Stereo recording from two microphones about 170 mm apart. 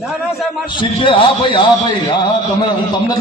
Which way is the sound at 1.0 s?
30° left (ahead or behind).